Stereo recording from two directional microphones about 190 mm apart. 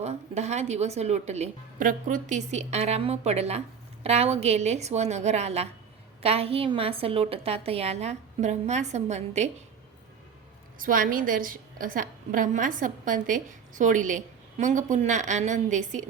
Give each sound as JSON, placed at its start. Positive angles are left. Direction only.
{"t": 0.0, "sound": "speech", "side_deg": -35}
{"t": 10.8, "sound": "a woman's voice", "side_deg": -45}